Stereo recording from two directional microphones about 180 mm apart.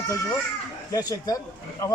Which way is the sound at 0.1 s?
15° left (ahead or behind).